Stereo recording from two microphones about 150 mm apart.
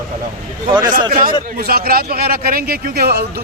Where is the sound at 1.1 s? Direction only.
75° right (ahead or behind).